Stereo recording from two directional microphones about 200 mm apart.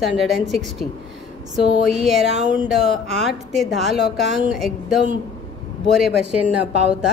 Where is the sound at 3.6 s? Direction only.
Centre (ahead or behind).